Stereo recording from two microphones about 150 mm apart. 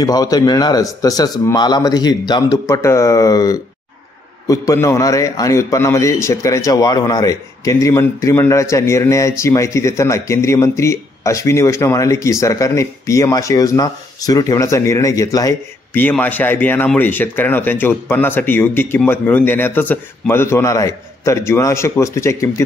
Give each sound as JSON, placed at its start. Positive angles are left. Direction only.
{"t": 0.0, "sound": "speech", "side_deg": 25}